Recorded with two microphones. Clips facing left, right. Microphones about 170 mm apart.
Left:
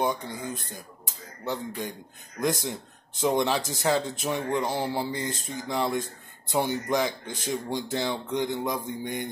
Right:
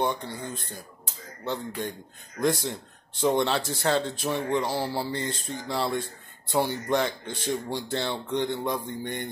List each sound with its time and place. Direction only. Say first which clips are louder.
0.0 s speech: even; 15° left (ahead or behind)